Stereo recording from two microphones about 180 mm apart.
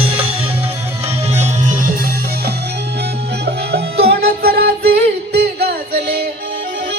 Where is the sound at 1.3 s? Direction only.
40° right (ahead or behind).